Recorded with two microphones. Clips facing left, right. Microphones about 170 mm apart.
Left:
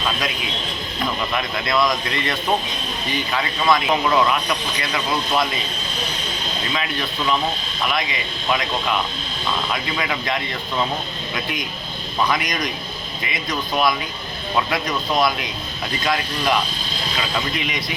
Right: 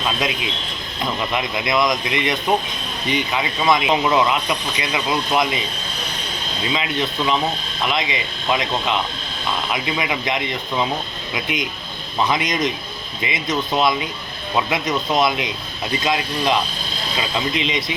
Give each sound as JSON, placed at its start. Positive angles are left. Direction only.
{"t": 1.3, "sound": "speech", "side_deg": -20}
{"t": 6.7, "sound": "speech", "side_deg": -20}